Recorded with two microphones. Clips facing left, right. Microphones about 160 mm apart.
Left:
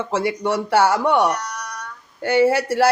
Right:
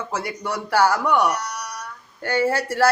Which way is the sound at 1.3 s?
5° right (ahead or behind).